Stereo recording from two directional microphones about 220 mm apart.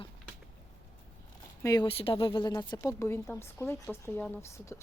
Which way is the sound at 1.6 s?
15° left (ahead or behind).